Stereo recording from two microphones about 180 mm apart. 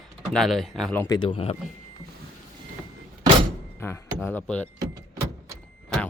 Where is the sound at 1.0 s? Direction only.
25° left (ahead or behind).